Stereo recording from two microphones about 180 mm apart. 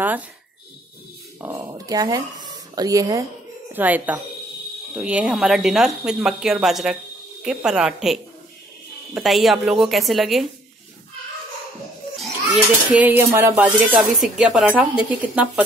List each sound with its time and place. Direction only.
1.4 s a sound: 15° right (ahead or behind)
1.7 s speech: 20° right (ahead or behind); by 10.5 s centre (ahead or behind)
12.9 s speech: 10° right (ahead or behind)